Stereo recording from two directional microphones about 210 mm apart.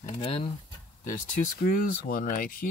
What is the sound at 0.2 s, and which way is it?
Speech, 25° left (ahead or behind).